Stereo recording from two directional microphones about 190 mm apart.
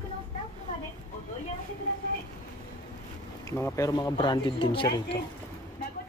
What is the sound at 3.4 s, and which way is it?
Speech, 15° left (ahead or behind).